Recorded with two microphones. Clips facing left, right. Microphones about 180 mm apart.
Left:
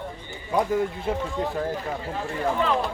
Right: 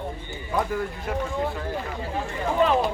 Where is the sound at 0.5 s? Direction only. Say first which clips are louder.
Left 3 dB; 20° left (ahead or behind).